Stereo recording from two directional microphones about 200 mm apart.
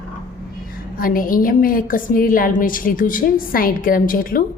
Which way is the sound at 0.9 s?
45° left (ahead or behind).